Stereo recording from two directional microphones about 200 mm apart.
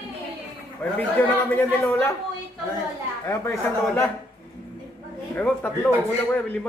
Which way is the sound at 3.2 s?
15° left (ahead or behind).